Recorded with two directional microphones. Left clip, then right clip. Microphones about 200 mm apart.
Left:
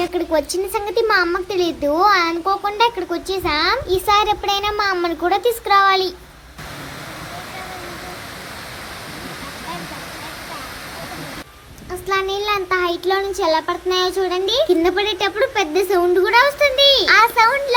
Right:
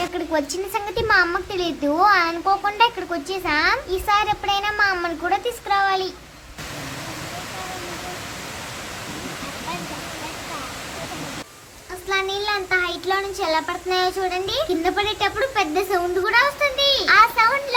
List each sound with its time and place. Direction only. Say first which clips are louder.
0.0 s speech: left 4 dB; 10° left (ahead or behind)
12.0 s a child's voice: left 3 dB; 20° left (ahead or behind)